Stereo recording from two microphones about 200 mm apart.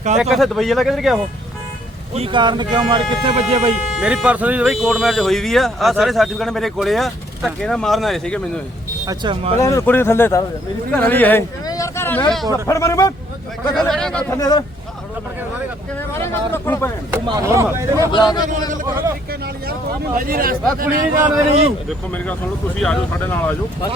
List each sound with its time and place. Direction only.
0.2 s speech: centre (ahead or behind)
2.1 s speech: 25° right (ahead or behind)
3.9 s speech: 5° right (ahead or behind)
9.0 s speech: 25° right (ahead or behind)
9.6 s speech: 15° left (ahead or behind)
13.7 s speech: centre (ahead or behind)
14.3 s speech: 20° left (ahead or behind)
16.0 s speech: 10° left (ahead or behind)
17.2 s speech: 15° right (ahead or behind)
18.1 s a man's voice: 20° left (ahead or behind)
20.1 s speech: 45° right (ahead or behind)
22.1 s speech: 5° left (ahead or behind)